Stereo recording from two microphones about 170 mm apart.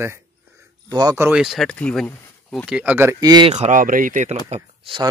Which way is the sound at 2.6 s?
5° right (ahead or behind).